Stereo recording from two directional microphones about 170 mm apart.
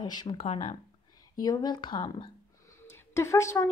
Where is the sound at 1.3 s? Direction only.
20° left (ahead or behind).